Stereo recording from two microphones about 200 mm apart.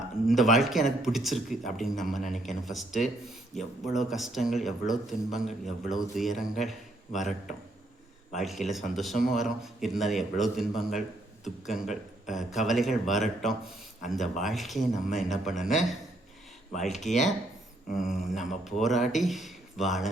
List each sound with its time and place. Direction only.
0.3 s speech: centre (ahead or behind)
17.1 s speech: 35° left (ahead or behind)
17.9 s speech: centre (ahead or behind)